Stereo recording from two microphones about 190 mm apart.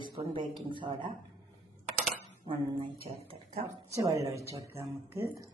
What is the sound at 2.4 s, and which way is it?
Speech, 30° right (ahead or behind).